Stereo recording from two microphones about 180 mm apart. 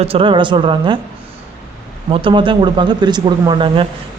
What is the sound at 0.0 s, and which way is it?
Speech, 30° right (ahead or behind).